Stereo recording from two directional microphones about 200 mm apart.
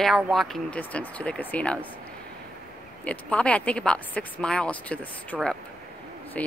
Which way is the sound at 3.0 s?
5° left (ahead or behind).